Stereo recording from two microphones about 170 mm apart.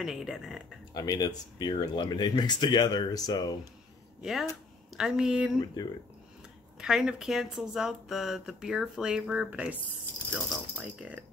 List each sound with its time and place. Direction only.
0.0 s speech: centre (ahead or behind)
0.9 s speech: 25° left (ahead or behind)
4.2 s speech: centre (ahead or behind)
6.8 s speech: 5° right (ahead or behind)